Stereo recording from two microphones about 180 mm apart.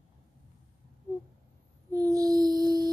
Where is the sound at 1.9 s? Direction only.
20° right (ahead or behind).